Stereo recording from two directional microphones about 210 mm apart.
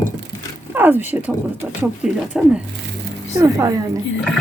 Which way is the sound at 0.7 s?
10° right (ahead or behind).